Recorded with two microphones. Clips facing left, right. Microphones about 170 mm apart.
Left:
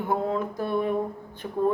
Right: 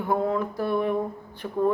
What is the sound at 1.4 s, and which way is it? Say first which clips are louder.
Speech: right 1 dB; 15° left (ahead or behind).